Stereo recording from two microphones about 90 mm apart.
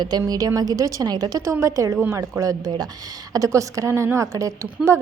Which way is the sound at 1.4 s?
35° right (ahead or behind).